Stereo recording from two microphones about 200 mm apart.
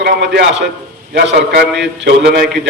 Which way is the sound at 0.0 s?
55° right (ahead or behind).